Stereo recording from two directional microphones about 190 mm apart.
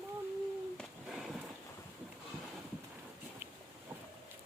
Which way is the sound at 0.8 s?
Centre (ahead or behind).